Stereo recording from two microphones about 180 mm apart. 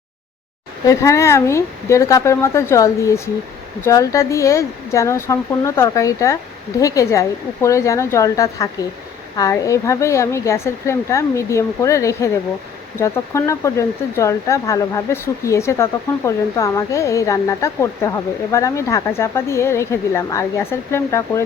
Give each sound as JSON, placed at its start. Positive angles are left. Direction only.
{"t": 0.9, "sound": "speech", "side_deg": 15}